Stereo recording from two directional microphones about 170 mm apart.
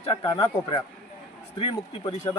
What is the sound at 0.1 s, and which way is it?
A man's voice, 30° left (ahead or behind).